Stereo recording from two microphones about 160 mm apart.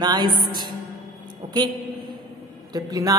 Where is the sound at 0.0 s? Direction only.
25° right (ahead or behind).